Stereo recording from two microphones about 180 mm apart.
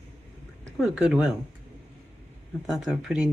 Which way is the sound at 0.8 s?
5° right (ahead or behind).